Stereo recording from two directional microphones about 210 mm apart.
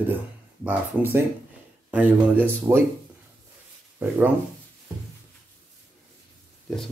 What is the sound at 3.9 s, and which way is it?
Speech, 10° right (ahead or behind).